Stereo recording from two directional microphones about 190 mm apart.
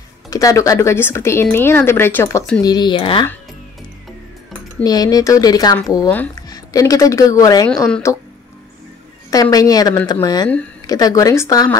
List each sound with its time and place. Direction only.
0.3 s speech: 20° left (ahead or behind)
2.6 s speech: 20° left (ahead or behind)
4.8 s speech: 20° left (ahead or behind)
6.0 s speech: 10° left (ahead or behind)
9.3 s speech: 20° left (ahead or behind)